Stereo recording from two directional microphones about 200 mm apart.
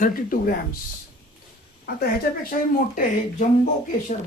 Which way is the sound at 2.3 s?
50° left (ahead or behind).